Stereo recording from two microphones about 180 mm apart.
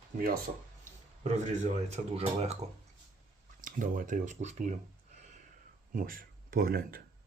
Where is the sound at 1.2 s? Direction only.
40° right (ahead or behind).